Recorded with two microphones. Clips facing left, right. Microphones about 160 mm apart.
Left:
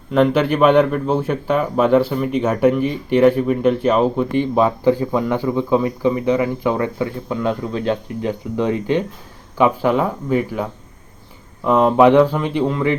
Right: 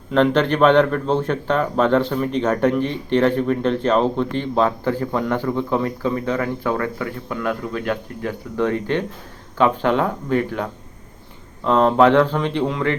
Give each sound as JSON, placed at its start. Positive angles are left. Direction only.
{"t": 0.1, "sound": "speech", "side_deg": 5}